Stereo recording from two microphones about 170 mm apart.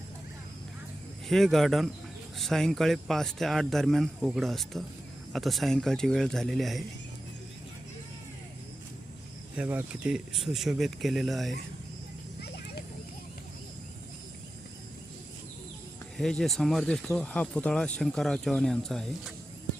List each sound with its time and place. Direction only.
1.3 s speech: centre (ahead or behind)
9.6 s speech: 10° right (ahead or behind)
12.4 s clip-clop: 70° left (ahead or behind)
16.1 s speech: centre (ahead or behind)